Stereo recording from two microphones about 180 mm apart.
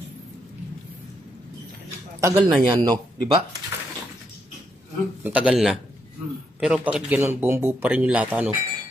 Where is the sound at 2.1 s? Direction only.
20° right (ahead or behind).